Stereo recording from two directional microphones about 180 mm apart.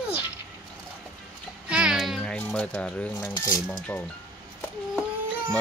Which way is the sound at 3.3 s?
20° left (ahead or behind).